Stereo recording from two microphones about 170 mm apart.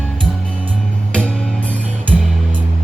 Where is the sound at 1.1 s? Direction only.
5° left (ahead or behind).